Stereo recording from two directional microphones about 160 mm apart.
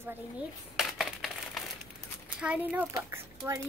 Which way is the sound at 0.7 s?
Centre (ahead or behind).